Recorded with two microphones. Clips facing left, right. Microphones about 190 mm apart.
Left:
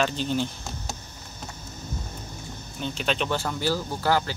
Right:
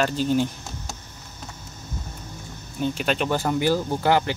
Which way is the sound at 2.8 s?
10° right (ahead or behind).